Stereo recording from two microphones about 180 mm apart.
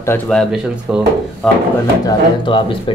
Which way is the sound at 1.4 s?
Centre (ahead or behind).